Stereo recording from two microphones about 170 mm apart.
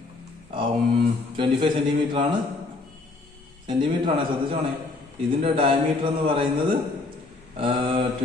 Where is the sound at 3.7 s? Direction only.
25° right (ahead or behind).